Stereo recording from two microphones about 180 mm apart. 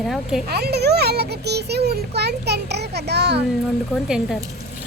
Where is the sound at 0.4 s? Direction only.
65° right (ahead or behind).